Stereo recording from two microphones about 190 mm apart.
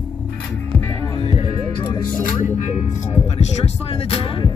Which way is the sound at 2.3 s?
45° left (ahead or behind).